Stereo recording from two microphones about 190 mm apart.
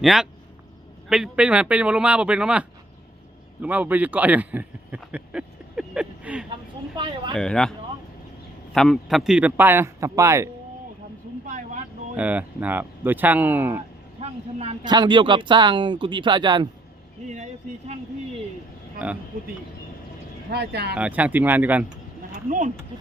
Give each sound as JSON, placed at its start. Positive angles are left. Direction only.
{"t": 0.0, "sound": "a man's voice", "side_deg": 0}
{"t": 6.9, "sound": "speech", "side_deg": -25}
{"t": 7.3, "sound": "speech", "side_deg": 5}
{"t": 8.7, "sound": "speech", "side_deg": 0}
{"t": 11.4, "sound": "vehicle", "side_deg": -40}
{"t": 12.1, "sound": "speech", "side_deg": -10}
{"t": 14.2, "sound": "speech", "side_deg": -35}
{"t": 14.8, "sound": "speech", "side_deg": -25}
{"t": 17.2, "sound": "speech", "side_deg": -35}
{"t": 20.5, "sound": "speech", "side_deg": -60}
{"t": 20.9, "sound": "speech", "side_deg": -5}
{"t": 22.4, "sound": "speech", "side_deg": -40}